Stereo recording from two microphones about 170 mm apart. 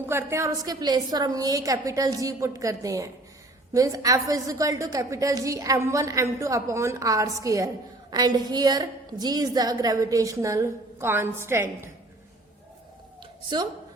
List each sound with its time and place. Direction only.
0.0 s a woman's voice: 15° right (ahead or behind)